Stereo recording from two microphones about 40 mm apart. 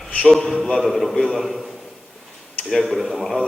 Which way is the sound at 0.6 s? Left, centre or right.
Centre.